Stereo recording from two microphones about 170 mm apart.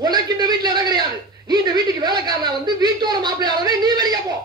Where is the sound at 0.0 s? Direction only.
25° right (ahead or behind).